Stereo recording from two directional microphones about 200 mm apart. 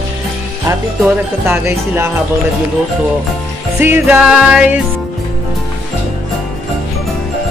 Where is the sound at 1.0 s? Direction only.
10° right (ahead or behind).